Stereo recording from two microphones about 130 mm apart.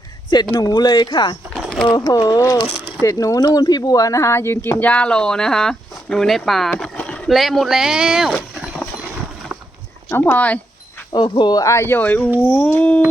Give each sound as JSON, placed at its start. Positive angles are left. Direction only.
{"t": 0.5, "sound": "speech", "side_deg": 30}
{"t": 1.5, "sound": "a sound", "side_deg": 0}
{"t": 2.1, "sound": "speech", "side_deg": 30}
{"t": 9.5, "sound": "a sound", "side_deg": -10}
{"t": 10.1, "sound": "speech", "side_deg": 15}
{"t": 11.1, "sound": "speech", "side_deg": 35}